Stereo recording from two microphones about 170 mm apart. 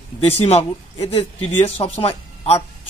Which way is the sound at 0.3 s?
35° left (ahead or behind).